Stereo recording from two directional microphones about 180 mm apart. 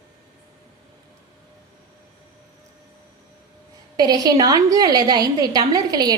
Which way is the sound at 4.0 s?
20° right (ahead or behind).